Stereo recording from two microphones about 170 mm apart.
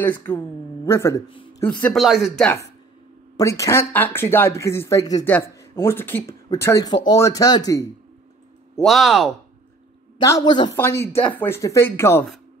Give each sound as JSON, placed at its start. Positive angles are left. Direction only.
{"t": 0.0, "sound": "speech", "side_deg": 10}
{"t": 3.3, "sound": "speech", "side_deg": 20}
{"t": 8.8, "sound": "speech", "side_deg": 0}
{"t": 10.2, "sound": "speech", "side_deg": 20}
{"t": 10.8, "sound": "speech", "side_deg": 15}